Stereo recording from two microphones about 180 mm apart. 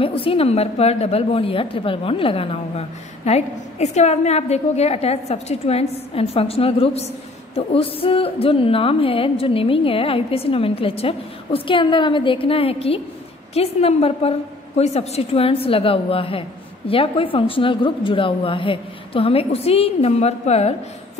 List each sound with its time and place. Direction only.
0.0 s a woman's voice: 30° left (ahead or behind)